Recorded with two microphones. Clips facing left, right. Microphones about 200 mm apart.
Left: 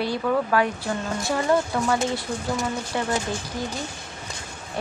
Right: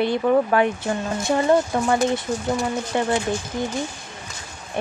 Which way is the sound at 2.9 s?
20° right (ahead or behind).